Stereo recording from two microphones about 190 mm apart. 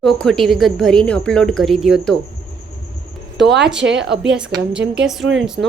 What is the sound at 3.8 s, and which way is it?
Speech, 65° right (ahead or behind).